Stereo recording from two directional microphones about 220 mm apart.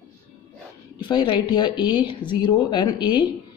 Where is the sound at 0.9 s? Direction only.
20° left (ahead or behind).